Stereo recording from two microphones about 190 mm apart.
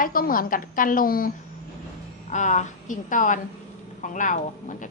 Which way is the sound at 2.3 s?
40° left (ahead or behind).